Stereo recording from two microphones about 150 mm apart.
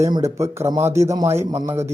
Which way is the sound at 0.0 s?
20° right (ahead or behind).